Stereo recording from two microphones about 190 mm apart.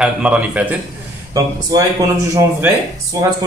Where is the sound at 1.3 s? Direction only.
20° right (ahead or behind).